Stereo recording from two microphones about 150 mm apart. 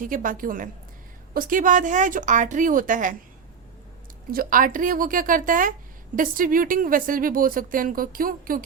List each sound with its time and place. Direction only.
0.0 s speech: 65° right (ahead or behind)
4.3 s speech: 70° right (ahead or behind)